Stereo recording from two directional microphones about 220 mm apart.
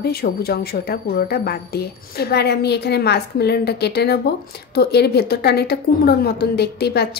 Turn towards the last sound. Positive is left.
turn(degrees=45)  # may be behind; listen again after turning